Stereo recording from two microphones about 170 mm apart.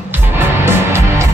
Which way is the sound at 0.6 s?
15° right (ahead or behind).